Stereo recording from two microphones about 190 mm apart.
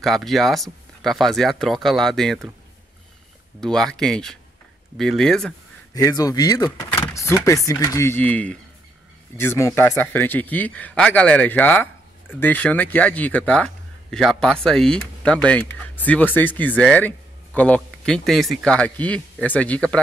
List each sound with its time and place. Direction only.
0.0 s speech: centre (ahead or behind)
3.6 s speech: 5° left (ahead or behind)
5.9 s speech: 20° left (ahead or behind)